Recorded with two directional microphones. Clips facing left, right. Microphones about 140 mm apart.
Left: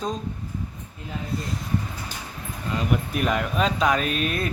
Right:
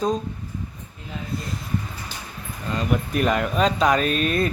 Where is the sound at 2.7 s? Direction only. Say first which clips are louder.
Right 2 dB; 5° left (ahead or behind).